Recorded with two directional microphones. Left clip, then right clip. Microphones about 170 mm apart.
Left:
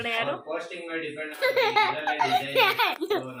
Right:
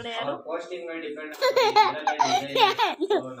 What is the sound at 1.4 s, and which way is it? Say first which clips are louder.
Speech: right 3 dB; 60° right (ahead or behind).